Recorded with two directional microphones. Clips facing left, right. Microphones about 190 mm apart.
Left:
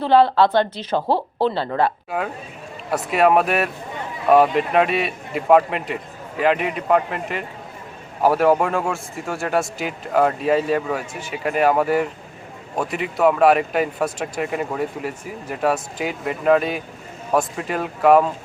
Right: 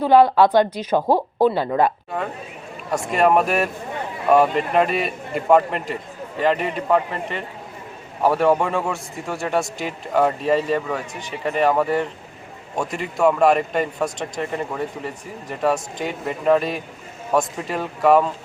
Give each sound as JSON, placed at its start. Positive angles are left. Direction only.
{"t": 0.0, "sound": "speech", "side_deg": -15}
{"t": 2.0, "sound": "speech", "side_deg": 5}